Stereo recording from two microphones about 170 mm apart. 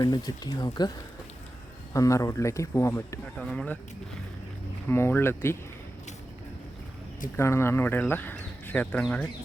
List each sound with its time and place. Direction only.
0.0 s speech: 20° left (ahead or behind)
3.3 s speech: 5° left (ahead or behind)
4.9 s speech: 15° left (ahead or behind)
7.3 s speech: 15° left (ahead or behind)